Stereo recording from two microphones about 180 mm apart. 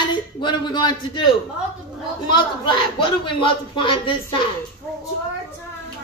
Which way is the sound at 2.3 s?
25° left (ahead or behind).